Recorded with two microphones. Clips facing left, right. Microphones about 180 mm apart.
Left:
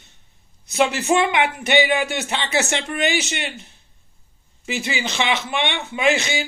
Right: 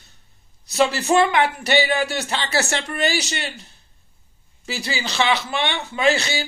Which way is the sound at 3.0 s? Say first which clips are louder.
Left 1 dB; 35° right (ahead or behind).